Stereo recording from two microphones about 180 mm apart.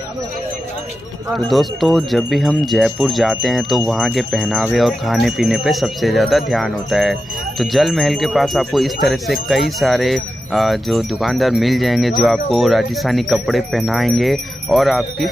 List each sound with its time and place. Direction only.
1.3 s speech: centre (ahead or behind)